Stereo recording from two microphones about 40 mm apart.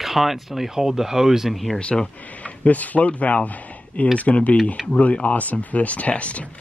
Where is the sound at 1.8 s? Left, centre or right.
Left.